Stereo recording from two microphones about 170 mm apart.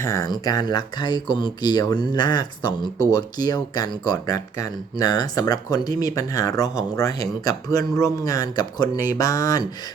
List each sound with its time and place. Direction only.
0.0 s speech: 20° left (ahead or behind)